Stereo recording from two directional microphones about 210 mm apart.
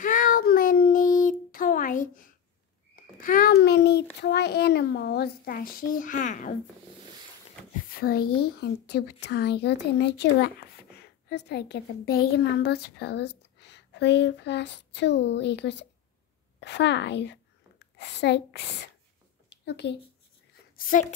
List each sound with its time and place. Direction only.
0.0 s child singing: 40° left (ahead or behind)
3.0 s a child's voice: 40° left (ahead or behind)
7.9 s a woman's voice: 45° left (ahead or behind)
20.7 s a sound: 40° left (ahead or behind)